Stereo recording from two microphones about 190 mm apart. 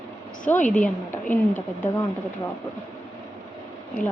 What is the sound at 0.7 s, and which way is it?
Speech, 5° left (ahead or behind).